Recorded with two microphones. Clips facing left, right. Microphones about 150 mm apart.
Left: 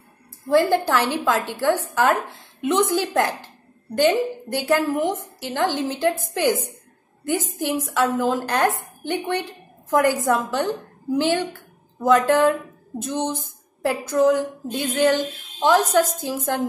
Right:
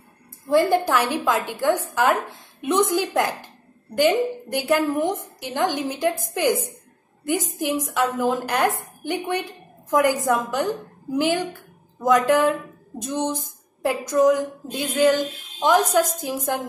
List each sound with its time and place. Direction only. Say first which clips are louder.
0.5 s a woman's voice: even; 15° right (ahead or behind)